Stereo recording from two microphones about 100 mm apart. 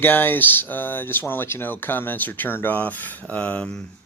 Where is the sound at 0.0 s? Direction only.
20° left (ahead or behind).